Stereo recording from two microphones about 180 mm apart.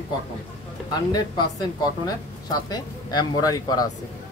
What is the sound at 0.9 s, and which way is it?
Speech, 25° left (ahead or behind).